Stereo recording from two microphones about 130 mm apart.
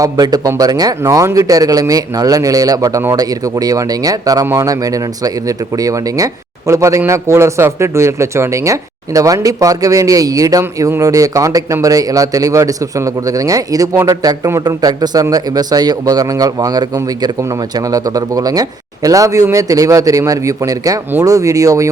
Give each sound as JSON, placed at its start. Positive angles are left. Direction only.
{"t": 0.0, "sound": "speech", "side_deg": -30}